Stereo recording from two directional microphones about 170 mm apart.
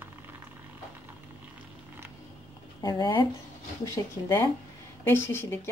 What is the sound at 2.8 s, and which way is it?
Speech, 25° left (ahead or behind).